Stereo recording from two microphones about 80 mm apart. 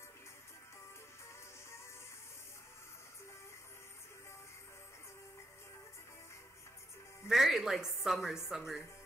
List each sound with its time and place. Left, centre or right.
7.2 s speech: centre